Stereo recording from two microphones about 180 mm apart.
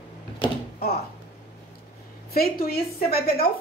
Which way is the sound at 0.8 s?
60° left (ahead or behind).